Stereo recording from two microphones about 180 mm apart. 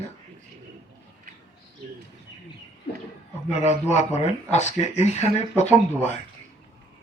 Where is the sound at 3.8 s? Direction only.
40° left (ahead or behind).